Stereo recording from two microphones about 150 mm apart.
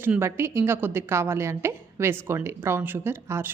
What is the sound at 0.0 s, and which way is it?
A woman's voice, 15° right (ahead or behind).